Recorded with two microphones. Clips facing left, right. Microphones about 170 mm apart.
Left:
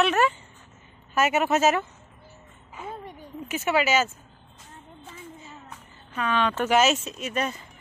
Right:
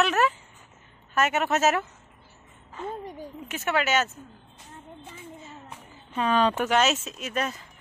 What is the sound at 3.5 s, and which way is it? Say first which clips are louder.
Speech: left 2 dB; 5° left (ahead or behind).